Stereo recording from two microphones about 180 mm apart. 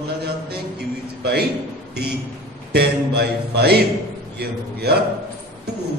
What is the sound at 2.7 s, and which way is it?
A man's voice, 65° right (ahead or behind).